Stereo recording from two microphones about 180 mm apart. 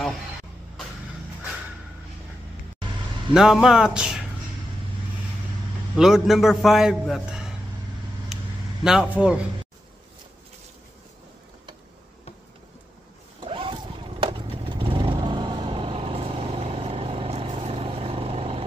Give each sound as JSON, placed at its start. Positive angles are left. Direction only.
{"t": 3.3, "sound": "a man's voice", "side_deg": 0}
{"t": 5.9, "sound": "a man's voice", "side_deg": 0}
{"t": 8.8, "sound": "a man's voice", "side_deg": -5}
{"t": 13.4, "sound": "vehicle", "side_deg": -30}